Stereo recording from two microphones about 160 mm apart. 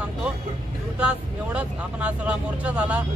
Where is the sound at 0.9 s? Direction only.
5° right (ahead or behind).